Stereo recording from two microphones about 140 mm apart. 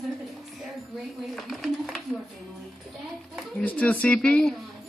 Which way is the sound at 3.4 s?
5° left (ahead or behind).